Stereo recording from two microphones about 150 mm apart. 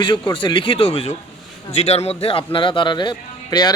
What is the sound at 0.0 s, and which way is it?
A man's voice, 30° left (ahead or behind).